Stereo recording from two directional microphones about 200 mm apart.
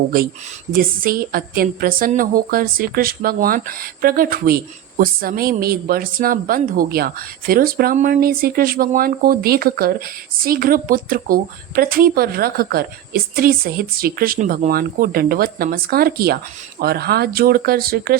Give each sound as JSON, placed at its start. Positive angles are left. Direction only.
{"t": 0.7, "sound": "a woman's voice", "side_deg": -45}